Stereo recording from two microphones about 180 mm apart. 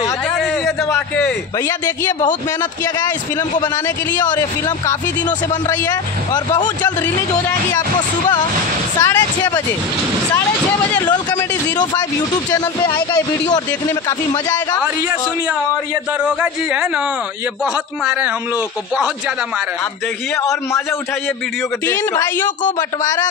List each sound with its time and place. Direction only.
0.9 s a man's voice: 10° left (ahead or behind)
4.2 s speech: 25° left (ahead or behind)
6.3 s speech: 25° left (ahead or behind)
9.0 s speech: 15° left (ahead or behind)
12.4 s speech: 20° left (ahead or behind)
16.3 s speech: 5° right (ahead or behind)
21.8 s speech: 15° left (ahead or behind)